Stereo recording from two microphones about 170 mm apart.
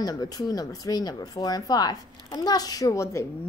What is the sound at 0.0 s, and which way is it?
A woman's voice, 20° left (ahead or behind).